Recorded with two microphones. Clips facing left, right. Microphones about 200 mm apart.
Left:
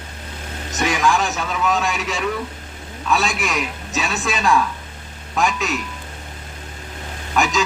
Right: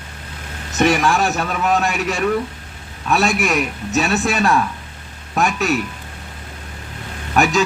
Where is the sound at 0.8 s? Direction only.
60° right (ahead or behind).